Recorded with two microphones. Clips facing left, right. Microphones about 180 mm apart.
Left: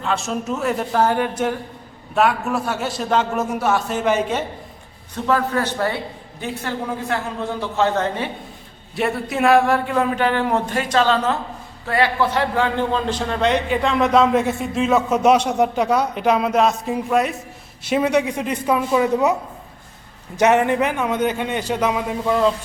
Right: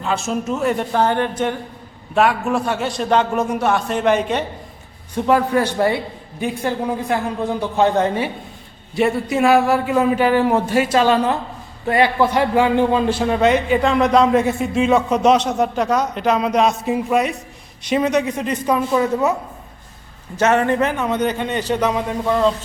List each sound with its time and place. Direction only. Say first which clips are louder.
0.0 s a man's voice: right 2 dB; centre (ahead or behind)
5.1 s a woman's voice: right 4 dB; 15° right (ahead or behind)
9.0 s a man's voice: right 4 dB; centre (ahead or behind)
17.8 s a man's voice: right 1 dB; 10° left (ahead or behind)